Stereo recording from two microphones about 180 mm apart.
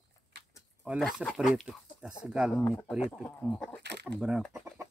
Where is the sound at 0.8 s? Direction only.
5° right (ahead or behind).